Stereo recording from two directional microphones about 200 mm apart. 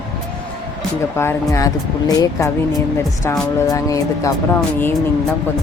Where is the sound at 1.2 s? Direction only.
15° left (ahead or behind).